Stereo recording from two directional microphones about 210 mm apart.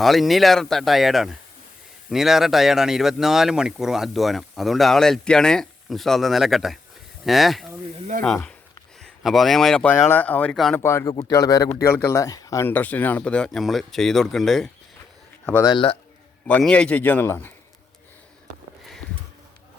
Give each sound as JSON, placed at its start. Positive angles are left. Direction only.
{"t": 0.0, "sound": "speech", "side_deg": 0}
{"t": 7.9, "sound": "speech", "side_deg": -35}
{"t": 9.0, "sound": "speech", "side_deg": 0}
{"t": 15.6, "sound": "speech", "side_deg": 25}
{"t": 16.5, "sound": "speech", "side_deg": 5}